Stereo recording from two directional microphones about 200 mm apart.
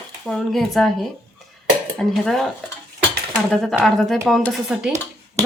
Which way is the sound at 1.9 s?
Centre (ahead or behind).